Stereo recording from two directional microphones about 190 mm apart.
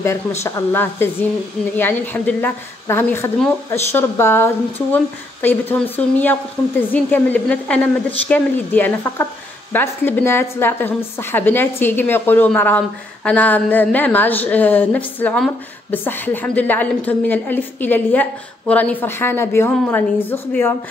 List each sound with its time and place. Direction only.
0.4 s a woman's voice: 15° left (ahead or behind)